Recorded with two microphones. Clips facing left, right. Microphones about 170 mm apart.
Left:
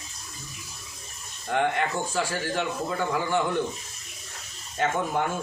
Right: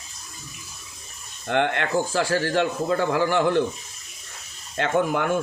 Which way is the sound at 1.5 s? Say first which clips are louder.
Right 2 dB; 70° right (ahead or behind).